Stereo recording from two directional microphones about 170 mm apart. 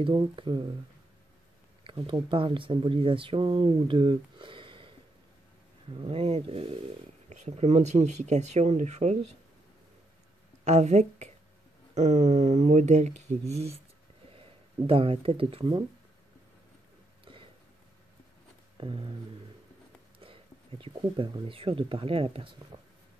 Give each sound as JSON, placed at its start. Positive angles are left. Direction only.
{"t": 0.0, "sound": "speech", "side_deg": -30}
{"t": 1.9, "sound": "speech", "side_deg": -30}
{"t": 5.9, "sound": "speech", "side_deg": -35}
{"t": 10.6, "sound": "a woman's voice", "side_deg": -40}
{"t": 14.9, "sound": "speech", "side_deg": -35}
{"t": 17.2, "sound": "a sound", "side_deg": -30}
{"t": 18.8, "sound": "speech", "side_deg": -30}
{"t": 20.2, "sound": "speech", "side_deg": -30}